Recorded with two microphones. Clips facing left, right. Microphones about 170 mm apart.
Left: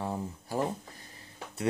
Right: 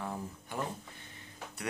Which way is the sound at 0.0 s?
30° left (ahead or behind).